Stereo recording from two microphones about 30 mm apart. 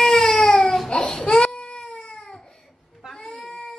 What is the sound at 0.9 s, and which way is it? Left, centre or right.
Baby cry, left.